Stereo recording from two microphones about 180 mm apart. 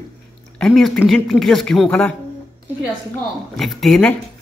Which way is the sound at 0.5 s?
5° left (ahead or behind).